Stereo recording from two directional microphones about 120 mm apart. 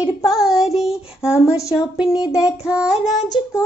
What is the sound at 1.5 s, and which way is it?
Speech, 25° left (ahead or behind).